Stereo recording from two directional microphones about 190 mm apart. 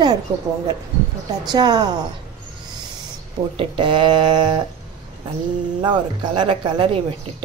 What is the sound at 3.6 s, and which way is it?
Speech, 25° right (ahead or behind).